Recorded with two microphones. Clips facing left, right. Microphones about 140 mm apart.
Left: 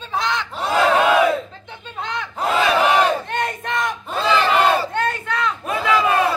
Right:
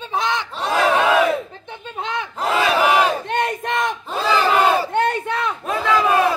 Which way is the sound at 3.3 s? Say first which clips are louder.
Right 2 dB; 25° right (ahead or behind).